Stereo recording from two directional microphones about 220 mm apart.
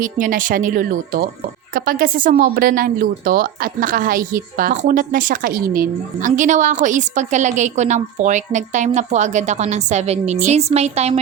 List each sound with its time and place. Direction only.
0.0 s a woman's voice: 40° right (ahead or behind)